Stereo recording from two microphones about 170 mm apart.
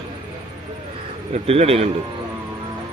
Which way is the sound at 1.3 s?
35° right (ahead or behind).